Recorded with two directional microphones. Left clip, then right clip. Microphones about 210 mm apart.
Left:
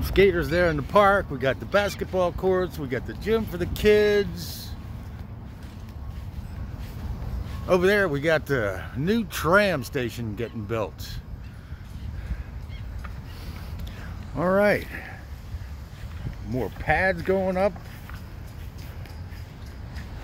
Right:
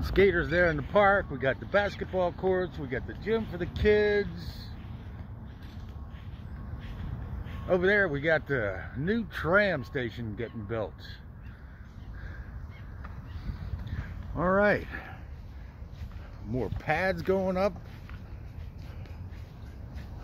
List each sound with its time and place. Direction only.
0.0 s speech: centre (ahead or behind)
7.6 s speech: 10° left (ahead or behind)
14.3 s speech: centre (ahead or behind)
16.5 s speech: 5° right (ahead or behind)